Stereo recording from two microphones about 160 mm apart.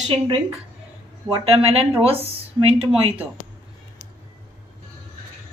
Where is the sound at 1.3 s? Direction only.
35° right (ahead or behind).